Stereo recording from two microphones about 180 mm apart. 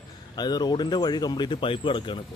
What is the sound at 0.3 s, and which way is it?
Speech, 25° left (ahead or behind).